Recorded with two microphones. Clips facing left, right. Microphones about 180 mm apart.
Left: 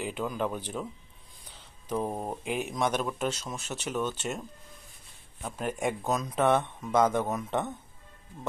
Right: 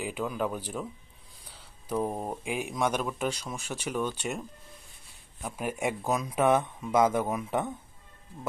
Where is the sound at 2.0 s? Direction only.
Centre (ahead or behind).